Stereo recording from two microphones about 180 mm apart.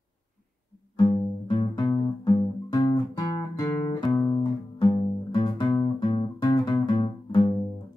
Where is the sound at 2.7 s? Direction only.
20° left (ahead or behind).